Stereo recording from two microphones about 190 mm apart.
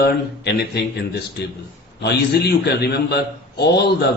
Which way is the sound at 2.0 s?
60° left (ahead or behind).